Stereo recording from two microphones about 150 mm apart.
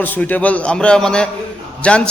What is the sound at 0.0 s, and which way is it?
A man's voice, 10° left (ahead or behind).